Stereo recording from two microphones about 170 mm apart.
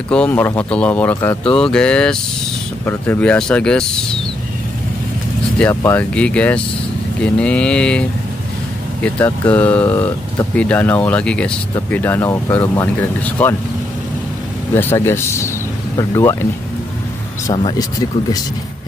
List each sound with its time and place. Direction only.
0.1 s speech: 10° left (ahead or behind)
5.6 s speech: 15° left (ahead or behind)
9.0 s speech: 10° left (ahead or behind)
14.7 s speech: 15° left (ahead or behind)